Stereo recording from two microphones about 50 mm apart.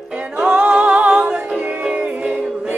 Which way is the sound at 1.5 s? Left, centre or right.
Right.